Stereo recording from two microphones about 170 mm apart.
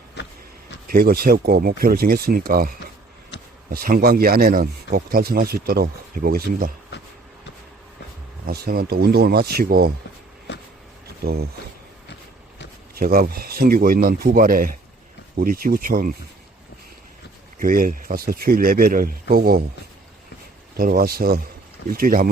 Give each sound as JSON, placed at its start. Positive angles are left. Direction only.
{"t": 0.9, "sound": "speech", "side_deg": -60}
{"t": 3.3, "sound": "a sound", "side_deg": 90}
{"t": 3.7, "sound": "speech", "side_deg": -60}
{"t": 8.4, "sound": "speech", "side_deg": -65}
{"t": 11.2, "sound": "speech", "side_deg": -65}
{"t": 12.9, "sound": "speech", "side_deg": -60}
{"t": 17.6, "sound": "speech", "side_deg": -55}
{"t": 20.7, "sound": "speech", "side_deg": -60}